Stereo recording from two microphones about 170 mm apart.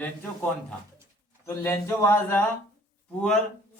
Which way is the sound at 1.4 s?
15° left (ahead or behind).